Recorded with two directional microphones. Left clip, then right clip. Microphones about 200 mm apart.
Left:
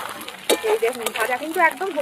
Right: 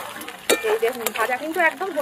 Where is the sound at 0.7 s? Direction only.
10° left (ahead or behind).